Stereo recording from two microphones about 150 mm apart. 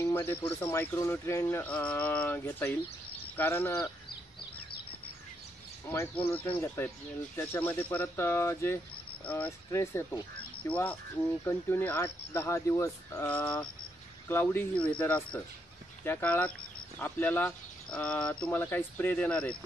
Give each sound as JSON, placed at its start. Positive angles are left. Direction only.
{"t": 0.0, "sound": "speech", "side_deg": 15}
{"t": 3.7, "sound": "a sound", "side_deg": 25}
{"t": 5.9, "sound": "speech", "side_deg": 15}